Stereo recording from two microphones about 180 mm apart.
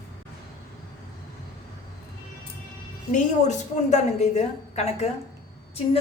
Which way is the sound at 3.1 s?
40° left (ahead or behind).